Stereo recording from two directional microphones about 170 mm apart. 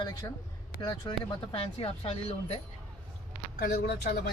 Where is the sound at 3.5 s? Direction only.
65° left (ahead or behind).